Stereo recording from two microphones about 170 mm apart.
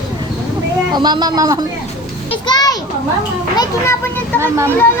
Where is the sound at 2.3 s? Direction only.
25° left (ahead or behind).